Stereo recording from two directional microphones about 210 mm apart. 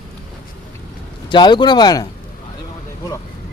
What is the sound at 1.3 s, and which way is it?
Speech, 20° left (ahead or behind).